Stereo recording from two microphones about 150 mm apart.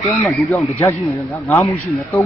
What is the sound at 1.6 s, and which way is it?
Speech, 20° left (ahead or behind).